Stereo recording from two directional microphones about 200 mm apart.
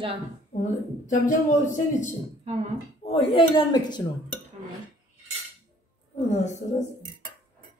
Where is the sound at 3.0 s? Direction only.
25° left (ahead or behind).